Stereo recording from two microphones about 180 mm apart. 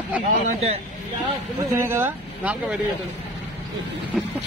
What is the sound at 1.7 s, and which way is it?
Speech, 15° right (ahead or behind).